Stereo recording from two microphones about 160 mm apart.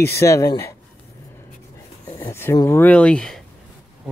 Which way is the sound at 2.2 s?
15° left (ahead or behind).